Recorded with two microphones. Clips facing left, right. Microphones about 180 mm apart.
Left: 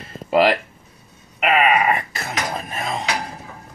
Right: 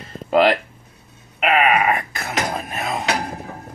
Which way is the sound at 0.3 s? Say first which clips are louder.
Right 1 dB; 5° left (ahead or behind).